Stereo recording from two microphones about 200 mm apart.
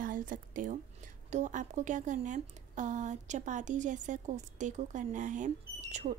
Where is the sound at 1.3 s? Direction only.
40° right (ahead or behind).